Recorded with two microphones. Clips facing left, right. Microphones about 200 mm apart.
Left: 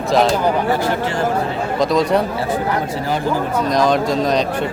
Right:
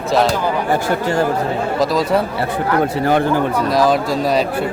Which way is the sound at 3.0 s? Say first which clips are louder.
Right 6 dB; 60° right (ahead or behind).